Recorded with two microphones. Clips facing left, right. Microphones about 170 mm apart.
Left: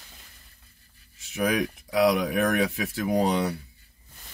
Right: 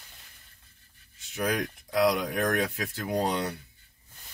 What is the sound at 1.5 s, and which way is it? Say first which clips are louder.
Speech: left 3 dB; 90° left.